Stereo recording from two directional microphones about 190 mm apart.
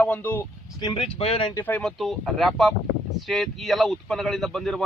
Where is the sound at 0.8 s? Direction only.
25° left (ahead or behind).